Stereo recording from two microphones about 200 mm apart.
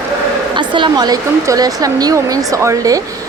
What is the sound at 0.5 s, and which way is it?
Speech, 25° right (ahead or behind).